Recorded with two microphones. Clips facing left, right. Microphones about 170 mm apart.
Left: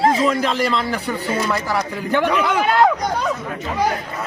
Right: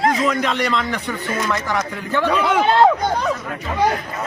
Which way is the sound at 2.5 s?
25° right (ahead or behind).